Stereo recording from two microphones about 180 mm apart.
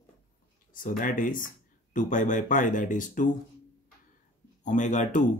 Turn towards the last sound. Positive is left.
turn(degrees=45)  # may be behind; listen again after turning